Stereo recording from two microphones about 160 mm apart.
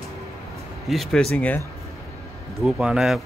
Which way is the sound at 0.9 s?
Centre (ahead or behind).